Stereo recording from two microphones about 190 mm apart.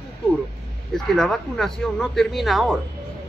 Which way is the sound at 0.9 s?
Centre (ahead or behind).